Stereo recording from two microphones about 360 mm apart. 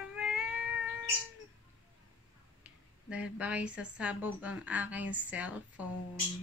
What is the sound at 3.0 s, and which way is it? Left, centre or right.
A woman's voice, centre.